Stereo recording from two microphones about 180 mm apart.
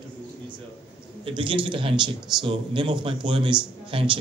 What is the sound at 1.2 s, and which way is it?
A man's voice, 30° right (ahead or behind).